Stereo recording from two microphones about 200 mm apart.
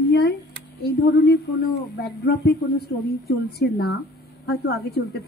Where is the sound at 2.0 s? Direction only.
55° left (ahead or behind).